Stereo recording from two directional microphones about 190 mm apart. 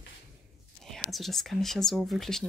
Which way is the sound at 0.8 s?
Centre (ahead or behind).